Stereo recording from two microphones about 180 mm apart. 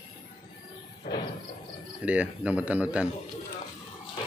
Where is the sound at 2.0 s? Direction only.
5° right (ahead or behind).